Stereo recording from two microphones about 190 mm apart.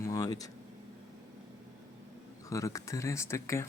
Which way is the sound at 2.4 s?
15° left (ahead or behind).